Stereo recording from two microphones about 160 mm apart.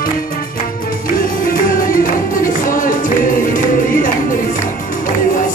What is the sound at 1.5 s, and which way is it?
Music, 60° left (ahead or behind).